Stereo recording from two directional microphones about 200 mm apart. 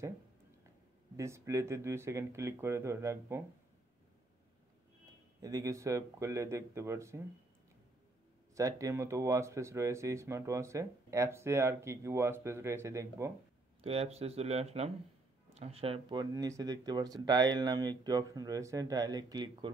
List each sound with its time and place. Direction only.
1.1 s speech: 15° right (ahead or behind)
5.4 s speech: 15° right (ahead or behind)
8.5 s speech: 15° right (ahead or behind)
13.7 s speech: 30° right (ahead or behind)